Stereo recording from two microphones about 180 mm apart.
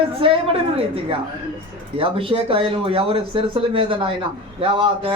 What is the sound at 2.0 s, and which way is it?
Speech, 30° right (ahead or behind).